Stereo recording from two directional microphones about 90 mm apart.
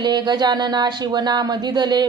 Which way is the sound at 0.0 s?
55° right (ahead or behind).